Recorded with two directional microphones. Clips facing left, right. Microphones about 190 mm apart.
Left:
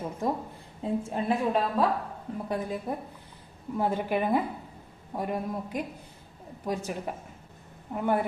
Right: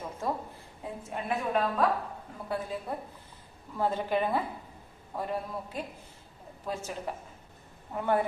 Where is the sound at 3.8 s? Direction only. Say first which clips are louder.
Left 1 dB; 15° left (ahead or behind).